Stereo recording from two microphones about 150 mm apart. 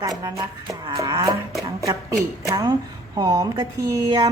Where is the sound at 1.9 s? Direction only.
20° right (ahead or behind).